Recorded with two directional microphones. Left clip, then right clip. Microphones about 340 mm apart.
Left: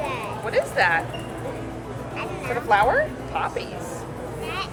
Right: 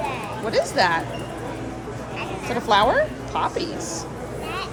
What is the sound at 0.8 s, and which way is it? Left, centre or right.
Speech, centre.